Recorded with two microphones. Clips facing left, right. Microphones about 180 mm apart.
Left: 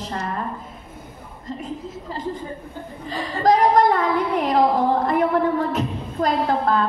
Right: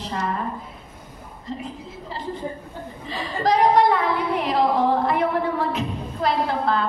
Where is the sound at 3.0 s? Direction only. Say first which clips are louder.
Left 4 dB; 45° left (ahead or behind).